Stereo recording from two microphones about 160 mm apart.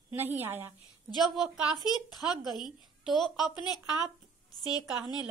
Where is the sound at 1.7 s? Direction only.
25° left (ahead or behind).